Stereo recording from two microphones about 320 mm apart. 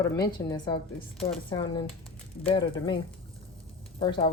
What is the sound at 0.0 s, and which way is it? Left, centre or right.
Speech, centre.